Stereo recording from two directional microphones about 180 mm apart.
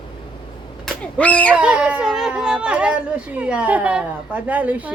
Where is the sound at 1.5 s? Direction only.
5° right (ahead or behind).